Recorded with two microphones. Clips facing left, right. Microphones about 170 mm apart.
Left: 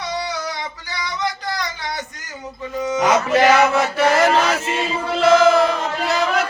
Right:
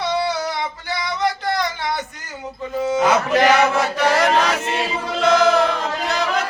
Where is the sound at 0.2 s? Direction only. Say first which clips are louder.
Right 4 dB; 60° right (ahead or behind).